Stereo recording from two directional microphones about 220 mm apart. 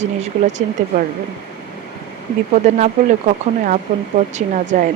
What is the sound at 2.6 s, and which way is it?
Speech, 35° right (ahead or behind).